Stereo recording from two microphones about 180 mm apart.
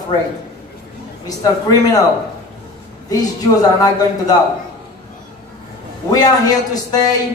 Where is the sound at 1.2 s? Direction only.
20° left (ahead or behind).